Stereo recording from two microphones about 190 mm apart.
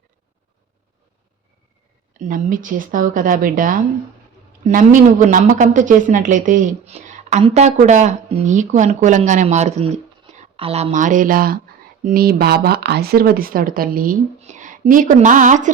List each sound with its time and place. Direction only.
2.1 s speech: 45° right (ahead or behind)